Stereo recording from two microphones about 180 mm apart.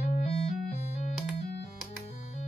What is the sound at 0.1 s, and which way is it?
Music, 35° left (ahead or behind).